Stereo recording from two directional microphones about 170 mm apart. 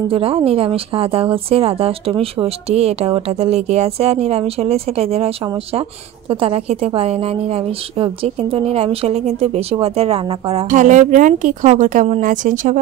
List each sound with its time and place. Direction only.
0.1 s a woman's voice: 35° right (ahead or behind)
10.7 s speech: 45° right (ahead or behind)